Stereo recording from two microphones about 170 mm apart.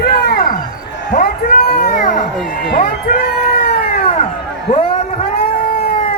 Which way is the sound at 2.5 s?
65° left (ahead or behind).